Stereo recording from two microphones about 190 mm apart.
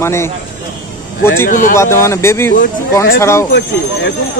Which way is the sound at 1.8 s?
15° left (ahead or behind).